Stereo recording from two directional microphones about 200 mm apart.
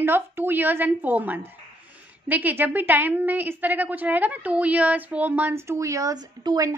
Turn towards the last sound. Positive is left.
turn(degrees=-20)  # may be behind; listen again after turning